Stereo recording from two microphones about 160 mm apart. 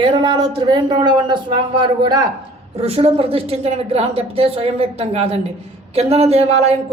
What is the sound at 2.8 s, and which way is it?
A woman's voice, 40° right (ahead or behind).